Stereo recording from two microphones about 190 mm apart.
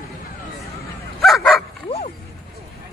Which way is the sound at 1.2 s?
Centre (ahead or behind).